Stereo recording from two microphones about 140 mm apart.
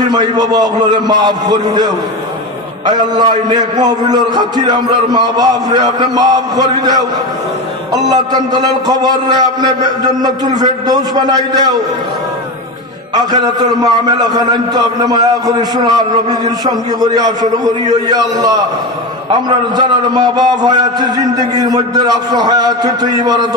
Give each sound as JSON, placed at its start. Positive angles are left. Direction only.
{"t": 0.1, "sound": "a man's voice", "side_deg": -30}
{"t": 2.9, "sound": "a man's voice", "side_deg": -30}
{"t": 13.1, "sound": "a man's voice", "side_deg": -30}
{"t": 19.7, "sound": "a man's voice", "side_deg": -30}